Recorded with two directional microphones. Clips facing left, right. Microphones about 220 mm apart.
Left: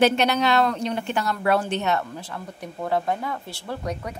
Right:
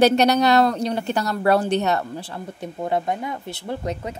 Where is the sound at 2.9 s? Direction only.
20° right (ahead or behind).